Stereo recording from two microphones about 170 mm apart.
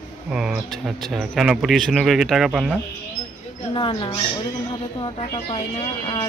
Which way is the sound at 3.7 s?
30° left (ahead or behind).